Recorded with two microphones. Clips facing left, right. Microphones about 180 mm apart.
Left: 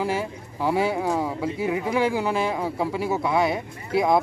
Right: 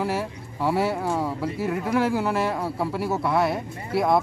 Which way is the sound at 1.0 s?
15° left (ahead or behind).